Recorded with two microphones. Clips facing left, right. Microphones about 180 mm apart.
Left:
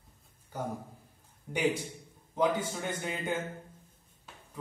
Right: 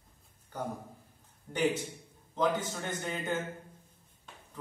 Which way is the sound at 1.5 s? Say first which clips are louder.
Even; 10° left (ahead or behind).